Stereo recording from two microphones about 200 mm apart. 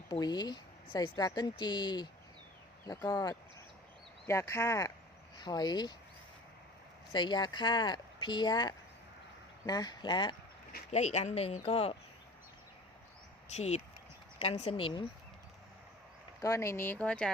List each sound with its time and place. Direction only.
0.1 s speech: 20° left (ahead or behind)
7.1 s speech: 20° left (ahead or behind)
10.9 s speech: 35° left (ahead or behind)
13.5 s speech: 35° left (ahead or behind)
16.4 s speech: 15° left (ahead or behind)